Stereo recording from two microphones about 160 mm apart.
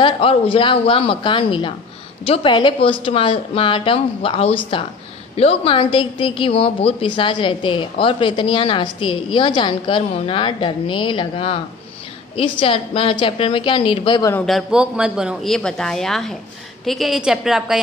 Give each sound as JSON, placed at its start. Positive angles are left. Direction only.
{"t": 0.0, "sound": "a woman's voice", "side_deg": 35}
{"t": 14.4, "sound": "speech", "side_deg": 0}